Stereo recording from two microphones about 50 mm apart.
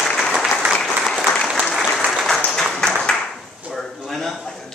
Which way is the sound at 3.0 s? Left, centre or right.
Centre.